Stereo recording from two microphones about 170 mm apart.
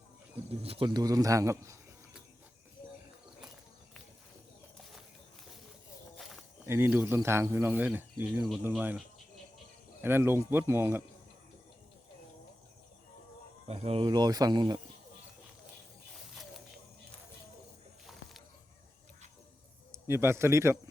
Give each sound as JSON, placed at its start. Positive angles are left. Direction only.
{"t": 0.6, "sound": "a man's voice", "side_deg": -35}
{"t": 6.1, "sound": "walk", "side_deg": 0}
{"t": 6.7, "sound": "speech", "side_deg": -15}
{"t": 13.7, "sound": "a man's voice", "side_deg": -40}
{"t": 18.0, "sound": "a sound", "side_deg": 0}
{"t": 19.9, "sound": "speech", "side_deg": -15}